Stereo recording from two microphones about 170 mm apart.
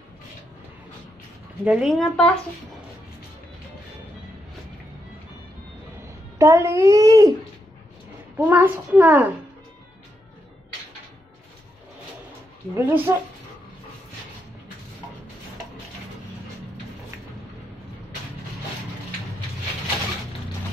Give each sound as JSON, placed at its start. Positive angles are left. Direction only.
{"t": 1.6, "sound": "a woman's voice", "side_deg": -5}
{"t": 6.3, "sound": "a child's voice", "side_deg": -15}
{"t": 8.4, "sound": "a child's voice", "side_deg": -10}
{"t": 12.7, "sound": "a child's voice", "side_deg": -15}